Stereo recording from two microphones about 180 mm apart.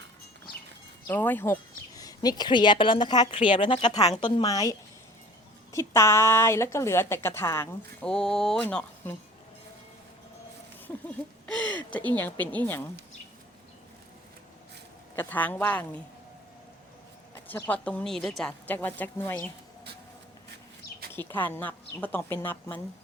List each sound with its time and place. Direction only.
1.0 s a woman's voice: 10° left (ahead or behind)
10.9 s a sound: 10° left (ahead or behind)
11.4 s a woman's voice: 5° left (ahead or behind)
15.1 s a woman's voice: 10° left (ahead or behind)
17.5 s a woman's voice: 10° left (ahead or behind)
21.1 s a woman's voice: 10° left (ahead or behind)